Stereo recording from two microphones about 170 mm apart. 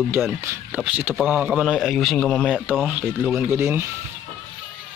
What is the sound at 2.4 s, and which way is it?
Speech, 5° right (ahead or behind).